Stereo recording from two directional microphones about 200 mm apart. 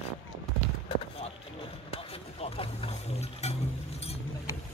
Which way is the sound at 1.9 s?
30° left (ahead or behind).